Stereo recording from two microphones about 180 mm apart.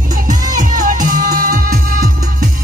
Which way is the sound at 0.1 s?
50° right (ahead or behind).